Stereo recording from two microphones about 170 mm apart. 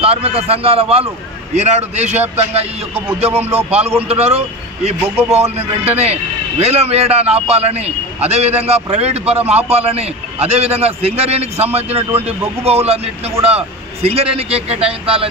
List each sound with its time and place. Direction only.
0.0 s a man's voice: 35° right (ahead or behind)